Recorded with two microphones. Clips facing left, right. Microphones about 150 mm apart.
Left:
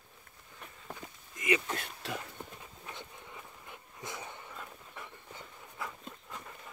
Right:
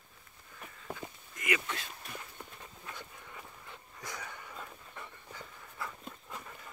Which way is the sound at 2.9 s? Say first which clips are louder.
Left 1 dB; 20° left (ahead or behind).